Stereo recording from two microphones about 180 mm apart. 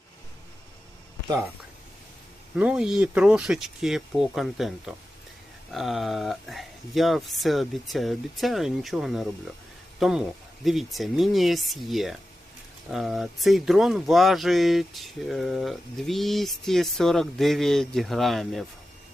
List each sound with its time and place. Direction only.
2.6 s speech: 5° right (ahead or behind)